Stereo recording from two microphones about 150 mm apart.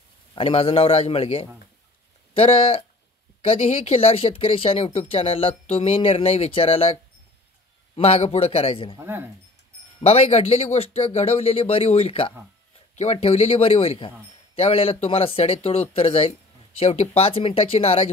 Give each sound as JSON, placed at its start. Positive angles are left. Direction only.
{"t": 0.3, "sound": "speech", "side_deg": 40}
{"t": 8.9, "sound": "speech", "side_deg": -15}
{"t": 10.0, "sound": "speech", "side_deg": 45}